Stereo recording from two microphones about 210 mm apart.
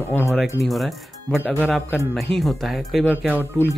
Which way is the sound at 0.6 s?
Centre (ahead or behind).